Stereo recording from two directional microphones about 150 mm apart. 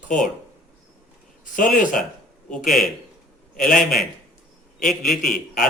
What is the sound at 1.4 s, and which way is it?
Speech, 60° left (ahead or behind).